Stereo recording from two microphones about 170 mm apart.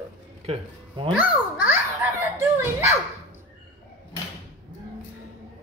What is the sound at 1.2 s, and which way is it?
A child's voice, 10° right (ahead or behind).